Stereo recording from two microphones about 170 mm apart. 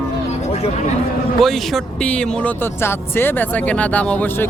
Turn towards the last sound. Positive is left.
turn(degrees=10)  # may be behind; listen again after turning